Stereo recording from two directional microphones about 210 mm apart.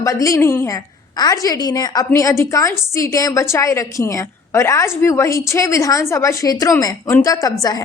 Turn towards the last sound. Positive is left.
turn(degrees=15)  # may be behind; listen again after turning